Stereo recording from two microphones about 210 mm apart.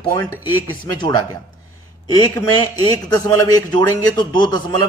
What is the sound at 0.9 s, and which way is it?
Speech, 20° left (ahead or behind).